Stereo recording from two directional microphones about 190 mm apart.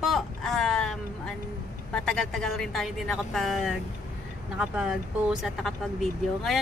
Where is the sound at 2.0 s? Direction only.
Centre (ahead or behind).